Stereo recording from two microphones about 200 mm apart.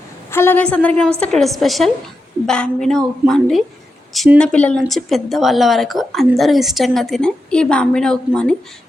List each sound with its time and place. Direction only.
0.3 s a woman's voice: 10° left (ahead or behind)